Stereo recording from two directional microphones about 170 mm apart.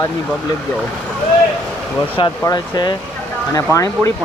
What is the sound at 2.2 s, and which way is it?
Speech, 25° left (ahead or behind).